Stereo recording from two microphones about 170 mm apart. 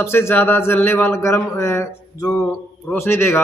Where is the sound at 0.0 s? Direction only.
15° left (ahead or behind).